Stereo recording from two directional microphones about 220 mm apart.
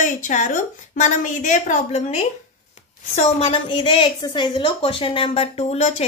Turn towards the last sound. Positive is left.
turn(degrees=30)  # may be behind; listen again after turning